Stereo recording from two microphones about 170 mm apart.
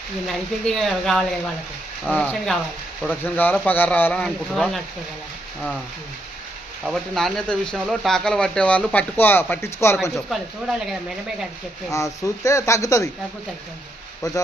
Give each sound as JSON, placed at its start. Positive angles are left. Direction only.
{"t": 0.3, "sound": "speech", "side_deg": 5}
{"t": 6.8, "sound": "speech", "side_deg": 0}
{"t": 10.2, "sound": "speech", "side_deg": 0}
{"t": 11.9, "sound": "speech", "side_deg": 20}